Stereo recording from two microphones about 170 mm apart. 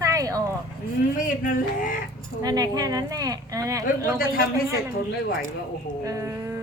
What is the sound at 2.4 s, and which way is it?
A woman's voice, 20° right (ahead or behind).